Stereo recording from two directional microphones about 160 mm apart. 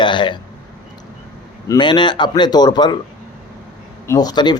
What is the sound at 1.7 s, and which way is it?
Speech, 30° left (ahead or behind).